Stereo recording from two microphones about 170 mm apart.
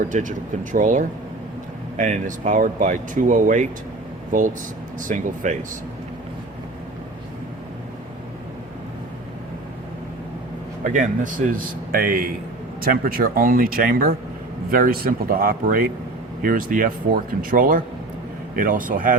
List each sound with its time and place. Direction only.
0.1 s speech: 50° right (ahead or behind)
10.8 s speech: 50° right (ahead or behind)